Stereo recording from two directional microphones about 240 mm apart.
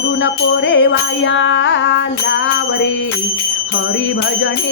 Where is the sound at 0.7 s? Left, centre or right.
Left.